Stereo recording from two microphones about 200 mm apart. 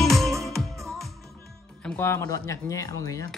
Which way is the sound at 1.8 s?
5° left (ahead or behind).